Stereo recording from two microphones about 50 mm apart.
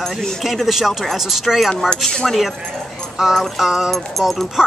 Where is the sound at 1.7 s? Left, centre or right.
Centre.